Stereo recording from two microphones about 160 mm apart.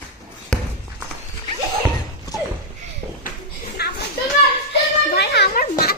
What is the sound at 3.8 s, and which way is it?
Children playing, 85° left.